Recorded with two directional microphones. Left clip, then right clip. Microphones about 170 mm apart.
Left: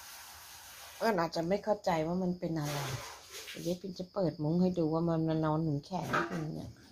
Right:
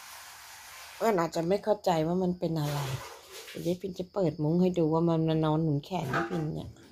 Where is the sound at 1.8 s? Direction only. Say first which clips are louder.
Right 5 dB; 60° right (ahead or behind).